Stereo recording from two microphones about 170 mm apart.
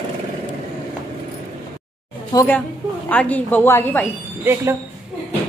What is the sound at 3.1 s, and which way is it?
A woman's voice, 10° left (ahead or behind).